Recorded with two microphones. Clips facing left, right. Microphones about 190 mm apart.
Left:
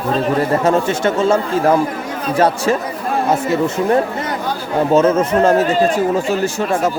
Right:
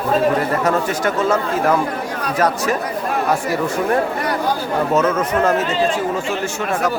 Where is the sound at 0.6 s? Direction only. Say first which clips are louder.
Left 3 dB; 25° left (ahead or behind).